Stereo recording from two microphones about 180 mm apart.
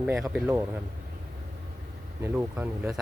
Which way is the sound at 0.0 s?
5° right (ahead or behind).